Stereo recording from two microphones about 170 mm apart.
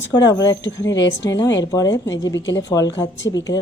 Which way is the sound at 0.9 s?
90° left.